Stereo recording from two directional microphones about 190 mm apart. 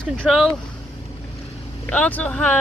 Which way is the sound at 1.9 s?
10° left (ahead or behind).